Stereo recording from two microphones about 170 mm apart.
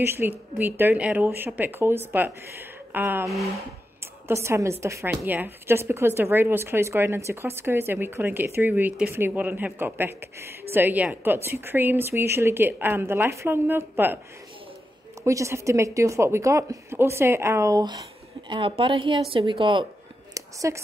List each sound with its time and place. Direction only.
0.0 s speech: 15° right (ahead or behind)
3.3 s speech: centre (ahead or behind)
4.0 s speech: 15° right (ahead or behind)
15.2 s a woman's voice: 15° right (ahead or behind)
20.3 s a sound: 20° right (ahead or behind)